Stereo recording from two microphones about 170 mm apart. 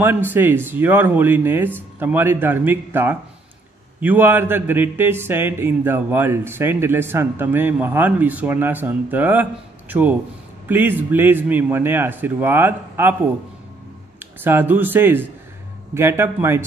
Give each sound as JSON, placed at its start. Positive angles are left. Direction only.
{"t": 0.0, "sound": "speech", "side_deg": -10}
{"t": 14.2, "sound": "speech", "side_deg": -10}